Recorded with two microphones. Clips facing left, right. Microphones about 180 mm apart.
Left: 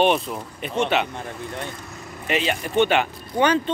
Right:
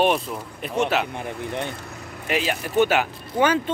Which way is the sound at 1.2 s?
20° right (ahead or behind).